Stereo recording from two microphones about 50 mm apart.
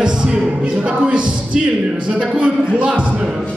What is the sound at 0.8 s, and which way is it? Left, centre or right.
A man's voice, right.